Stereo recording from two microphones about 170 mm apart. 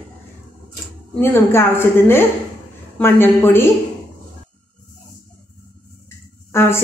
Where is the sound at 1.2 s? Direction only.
15° left (ahead or behind).